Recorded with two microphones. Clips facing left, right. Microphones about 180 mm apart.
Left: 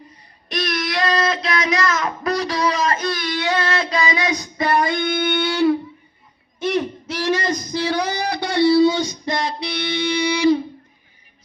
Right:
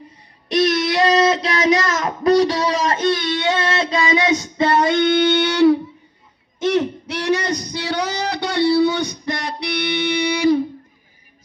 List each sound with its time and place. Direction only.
0.4 s child singing: 25° right (ahead or behind)
4.1 s music: 25° right (ahead or behind)
6.6 s a sound: 75° right (ahead or behind); by 10.6 s 60° right (ahead or behind)